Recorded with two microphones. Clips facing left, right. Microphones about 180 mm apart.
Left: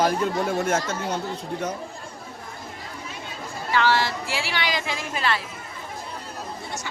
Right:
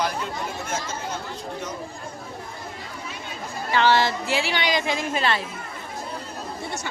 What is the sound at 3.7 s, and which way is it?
A woman's voice, 20° right (ahead or behind).